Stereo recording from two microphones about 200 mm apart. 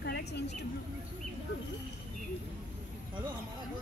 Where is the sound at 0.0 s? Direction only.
55° left (ahead or behind).